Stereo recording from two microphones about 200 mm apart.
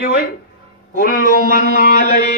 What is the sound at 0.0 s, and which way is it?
Speech, 50° left (ahead or behind).